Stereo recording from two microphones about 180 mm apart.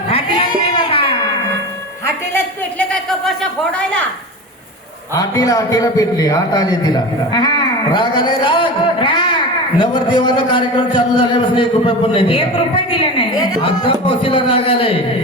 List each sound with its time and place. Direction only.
0.1 s a sound: 30° left (ahead or behind)
2.0 s a man's voice: 10° left (ahead or behind)
5.1 s a man's voice: 20° left (ahead or behind)